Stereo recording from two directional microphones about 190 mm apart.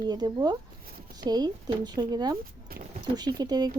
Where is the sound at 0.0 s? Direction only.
20° right (ahead or behind).